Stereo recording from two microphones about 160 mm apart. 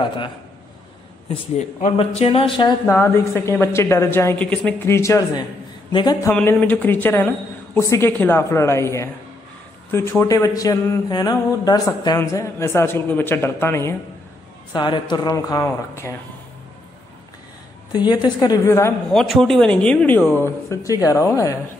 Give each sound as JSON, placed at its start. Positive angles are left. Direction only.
{"t": 0.0, "sound": "speech", "side_deg": 30}
{"t": 1.6, "sound": "a man's voice", "side_deg": 50}
{"t": 2.9, "sound": "speech", "side_deg": 15}
{"t": 6.3, "sound": "speech", "side_deg": 10}
{"t": 14.7, "sound": "speech", "side_deg": 30}
{"t": 17.9, "sound": "speech", "side_deg": 25}
{"t": 19.0, "sound": "speech", "side_deg": 0}